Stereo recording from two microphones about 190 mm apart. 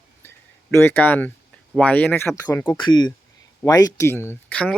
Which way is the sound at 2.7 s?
25° left (ahead or behind).